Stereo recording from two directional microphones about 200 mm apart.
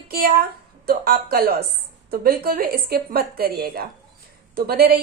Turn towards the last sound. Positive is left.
turn(degrees=-50)  # may be behind; listen again after turning